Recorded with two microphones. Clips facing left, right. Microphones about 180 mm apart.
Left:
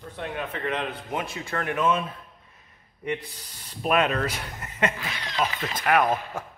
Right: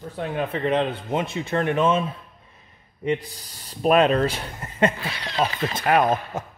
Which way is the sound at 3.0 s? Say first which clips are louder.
Right 6 dB; 35° right (ahead or behind).